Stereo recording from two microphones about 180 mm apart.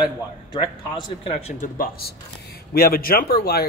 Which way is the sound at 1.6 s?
55° left (ahead or behind).